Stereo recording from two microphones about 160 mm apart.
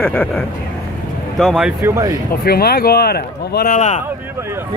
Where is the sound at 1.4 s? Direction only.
5° right (ahead or behind).